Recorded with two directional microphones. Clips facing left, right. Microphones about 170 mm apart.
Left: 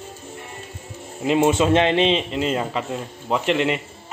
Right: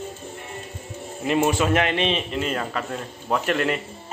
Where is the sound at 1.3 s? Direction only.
20° left (ahead or behind).